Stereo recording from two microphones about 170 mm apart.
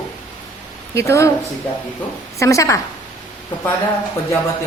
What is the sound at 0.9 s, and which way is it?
Speech, 15° left (ahead or behind).